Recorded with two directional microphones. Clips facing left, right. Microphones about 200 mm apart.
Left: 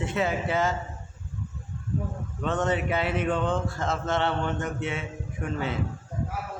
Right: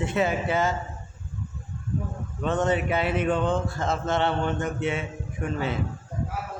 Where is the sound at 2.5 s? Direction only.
15° right (ahead or behind).